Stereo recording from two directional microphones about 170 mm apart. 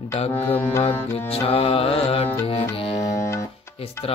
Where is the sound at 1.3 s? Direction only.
35° left (ahead or behind).